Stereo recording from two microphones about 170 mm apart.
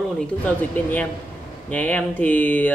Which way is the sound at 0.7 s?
10° left (ahead or behind).